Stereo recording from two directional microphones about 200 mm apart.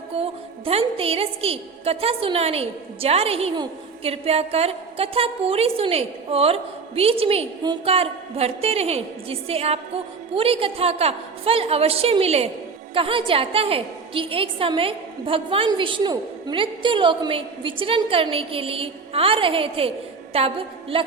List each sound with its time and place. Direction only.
0.1 s a woman's voice: 30° right (ahead or behind)